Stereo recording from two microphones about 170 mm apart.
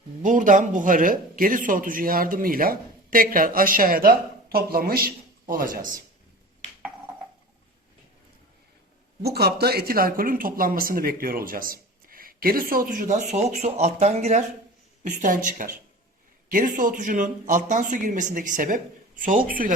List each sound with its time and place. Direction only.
0.2 s speech: 50° right (ahead or behind)
9.2 s speech: 70° right (ahead or behind); by 13.1 s 55° right (ahead or behind)
13.3 s speech: 40° right (ahead or behind)